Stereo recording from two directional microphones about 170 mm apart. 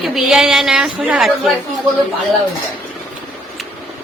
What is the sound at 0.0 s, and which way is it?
A woman's voice, centre (ahead or behind).